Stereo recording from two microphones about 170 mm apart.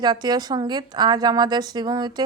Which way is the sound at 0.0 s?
25° right (ahead or behind).